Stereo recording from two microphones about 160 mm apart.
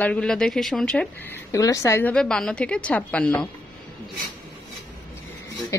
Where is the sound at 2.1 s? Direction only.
5° left (ahead or behind).